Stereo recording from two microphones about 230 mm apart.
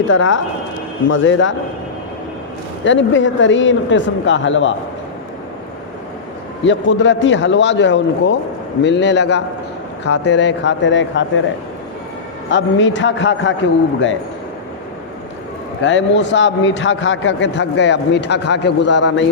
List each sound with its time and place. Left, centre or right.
0.1 s a man's voice: left
2.8 s a man's voice: left
6.7 s a man's voice: left
12.5 s a man's voice: left
15.8 s a man's voice: left